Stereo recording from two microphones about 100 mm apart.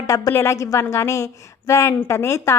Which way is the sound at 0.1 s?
30° left (ahead or behind).